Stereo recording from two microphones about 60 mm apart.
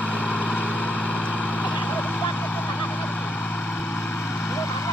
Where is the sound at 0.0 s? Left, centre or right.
Left.